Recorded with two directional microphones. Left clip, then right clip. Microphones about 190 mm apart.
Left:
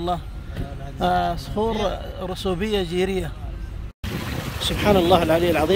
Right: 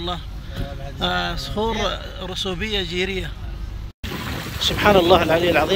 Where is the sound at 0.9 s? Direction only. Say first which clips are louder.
Left 2 dB; 25° left (ahead or behind).